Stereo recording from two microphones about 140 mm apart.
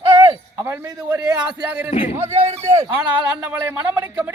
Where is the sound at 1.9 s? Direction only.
50° left (ahead or behind).